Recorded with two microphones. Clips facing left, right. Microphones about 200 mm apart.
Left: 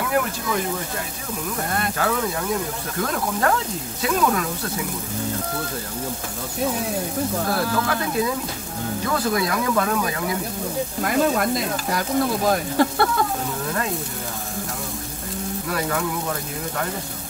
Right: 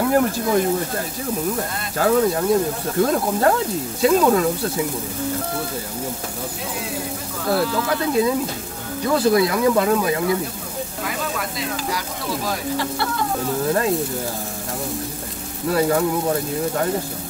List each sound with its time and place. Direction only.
0.0 s speech: 35° right (ahead or behind)
2.0 s speech: 35° right (ahead or behind)
9.1 s speech: 25° right (ahead or behind)
11.1 s sizzle: 50° left (ahead or behind)
15.7 s speech: 30° right (ahead or behind)